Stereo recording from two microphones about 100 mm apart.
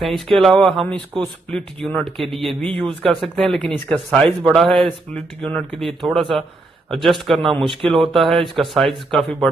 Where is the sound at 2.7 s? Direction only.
65° right (ahead or behind).